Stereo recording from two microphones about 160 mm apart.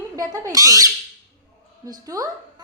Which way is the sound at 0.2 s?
20° right (ahead or behind).